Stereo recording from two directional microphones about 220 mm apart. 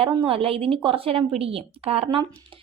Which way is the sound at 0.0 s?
25° right (ahead or behind).